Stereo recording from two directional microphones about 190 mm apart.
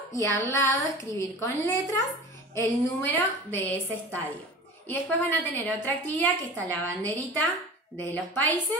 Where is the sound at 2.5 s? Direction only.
10° left (ahead or behind).